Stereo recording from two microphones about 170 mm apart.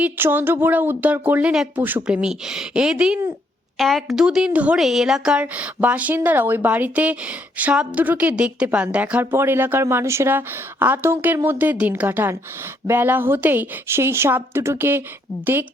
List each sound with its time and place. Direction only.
0.0 s a woman's voice: 10° right (ahead or behind)